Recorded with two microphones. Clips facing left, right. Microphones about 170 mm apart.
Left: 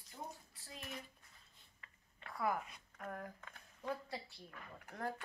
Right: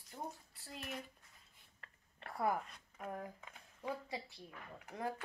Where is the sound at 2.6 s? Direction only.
5° left (ahead or behind).